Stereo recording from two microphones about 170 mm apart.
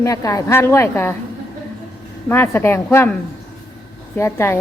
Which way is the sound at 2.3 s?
10° left (ahead or behind).